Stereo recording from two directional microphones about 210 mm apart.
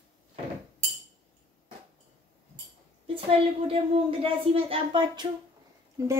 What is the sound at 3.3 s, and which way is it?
A woman's voice, 25° right (ahead or behind).